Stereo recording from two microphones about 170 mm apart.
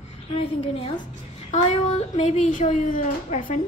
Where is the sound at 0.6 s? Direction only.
35° left (ahead or behind).